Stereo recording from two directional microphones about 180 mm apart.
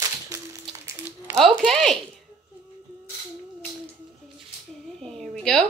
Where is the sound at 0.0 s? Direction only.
15° right (ahead or behind).